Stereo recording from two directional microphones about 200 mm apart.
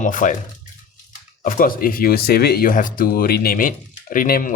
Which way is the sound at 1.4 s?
45° left (ahead or behind).